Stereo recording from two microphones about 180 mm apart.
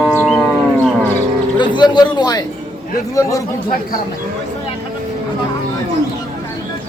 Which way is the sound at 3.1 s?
20° left (ahead or behind).